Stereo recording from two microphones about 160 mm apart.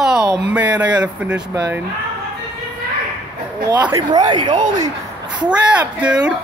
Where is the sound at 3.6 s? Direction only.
25° right (ahead or behind).